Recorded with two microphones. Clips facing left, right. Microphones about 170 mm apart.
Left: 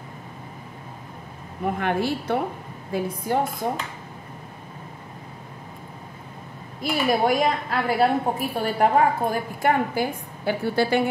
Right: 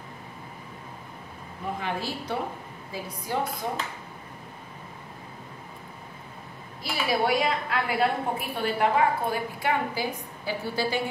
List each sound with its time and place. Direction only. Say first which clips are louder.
1.6 s a woman's voice: left 7 dB; 60° left (ahead or behind)
6.8 s a woman's voice: left 5 dB; 50° left (ahead or behind)